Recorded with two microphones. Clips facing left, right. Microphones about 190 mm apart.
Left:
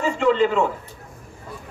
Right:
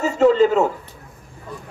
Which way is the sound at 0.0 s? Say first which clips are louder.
Right 4 dB; 40° right (ahead or behind).